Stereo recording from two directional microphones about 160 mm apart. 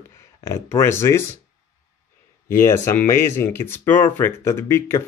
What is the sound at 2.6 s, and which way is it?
Speech, 15° left (ahead or behind).